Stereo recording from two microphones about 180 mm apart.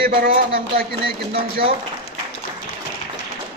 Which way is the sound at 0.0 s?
55° right (ahead or behind).